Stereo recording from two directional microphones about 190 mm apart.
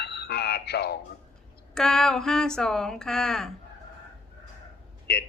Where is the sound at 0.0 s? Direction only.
55° left (ahead or behind).